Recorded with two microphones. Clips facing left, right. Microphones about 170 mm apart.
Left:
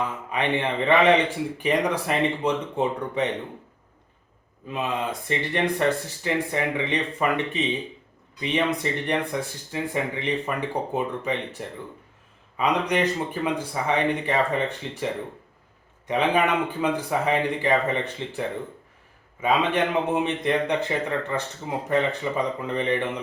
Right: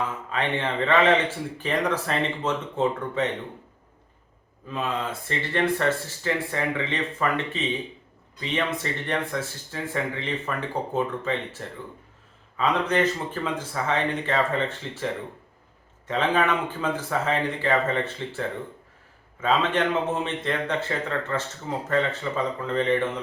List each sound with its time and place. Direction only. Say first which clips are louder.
0.3 s a man's voice: left 3 dB; 15° left (ahead or behind)
4.7 s a man's voice: left 1 dB; 15° left (ahead or behind)
16.0 s a man's voice: left 1 dB; 15° left (ahead or behind)